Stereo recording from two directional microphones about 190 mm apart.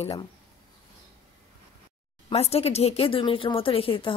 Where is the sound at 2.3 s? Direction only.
35° left (ahead or behind).